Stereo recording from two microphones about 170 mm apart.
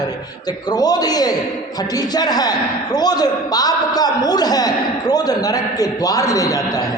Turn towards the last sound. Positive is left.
turn(degrees=20)  # may be behind; listen again after turning